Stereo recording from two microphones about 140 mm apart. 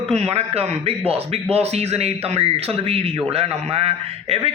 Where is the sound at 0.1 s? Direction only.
50° right (ahead or behind).